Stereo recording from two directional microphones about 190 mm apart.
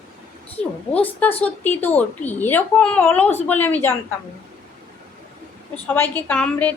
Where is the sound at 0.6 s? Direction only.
30° right (ahead or behind).